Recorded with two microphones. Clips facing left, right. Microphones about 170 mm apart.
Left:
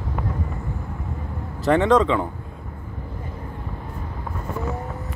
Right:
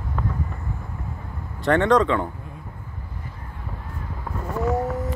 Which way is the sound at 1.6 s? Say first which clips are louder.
Left 1 dB; centre (ahead or behind).